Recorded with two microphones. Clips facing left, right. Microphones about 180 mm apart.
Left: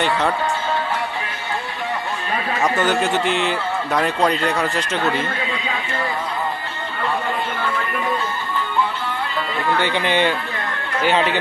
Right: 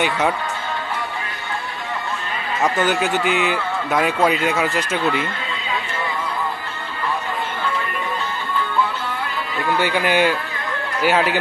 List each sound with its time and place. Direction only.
2.6 s a man's voice: centre (ahead or behind)
9.7 s speech: 10° right (ahead or behind)